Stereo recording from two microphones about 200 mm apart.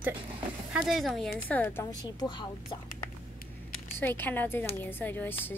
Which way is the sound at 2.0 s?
20° left (ahead or behind).